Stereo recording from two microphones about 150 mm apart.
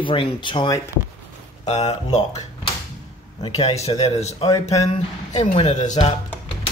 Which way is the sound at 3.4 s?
40° left (ahead or behind).